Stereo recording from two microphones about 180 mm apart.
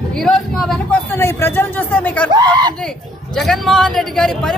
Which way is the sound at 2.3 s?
25° right (ahead or behind).